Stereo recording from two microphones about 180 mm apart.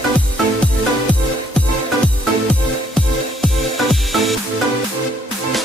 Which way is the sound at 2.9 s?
Centre (ahead or behind).